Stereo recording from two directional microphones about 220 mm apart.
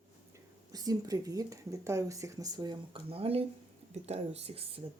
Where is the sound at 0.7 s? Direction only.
15° right (ahead or behind).